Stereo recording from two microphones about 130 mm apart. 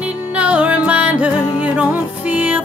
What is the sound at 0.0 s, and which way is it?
Music, 10° right (ahead or behind).